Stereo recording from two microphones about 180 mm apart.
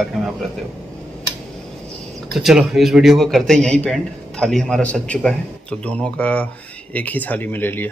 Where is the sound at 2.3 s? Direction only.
Centre (ahead or behind).